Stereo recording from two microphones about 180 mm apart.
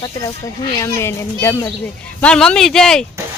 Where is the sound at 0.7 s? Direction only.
15° left (ahead or behind).